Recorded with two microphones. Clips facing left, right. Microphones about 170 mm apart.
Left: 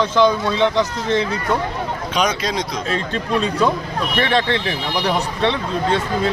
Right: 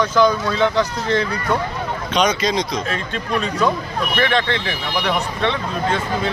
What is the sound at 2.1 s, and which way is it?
Speech, 5° left (ahead or behind).